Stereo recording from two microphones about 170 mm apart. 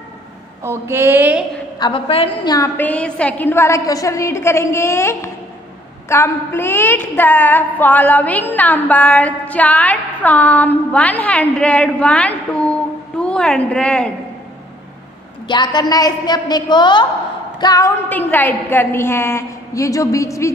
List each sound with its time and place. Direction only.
0.7 s a sound: 15° right (ahead or behind)
1.8 s a woman's voice: 30° left (ahead or behind)
2.8 s a woman's voice: 10° left (ahead or behind)
15.4 s a woman's voice: 25° left (ahead or behind)